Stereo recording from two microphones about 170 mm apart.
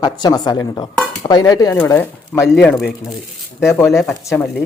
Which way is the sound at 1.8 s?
10° left (ahead or behind).